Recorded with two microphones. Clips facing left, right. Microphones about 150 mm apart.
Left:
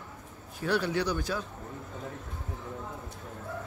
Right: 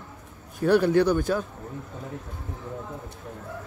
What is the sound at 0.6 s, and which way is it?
Speech, 50° right (ahead or behind).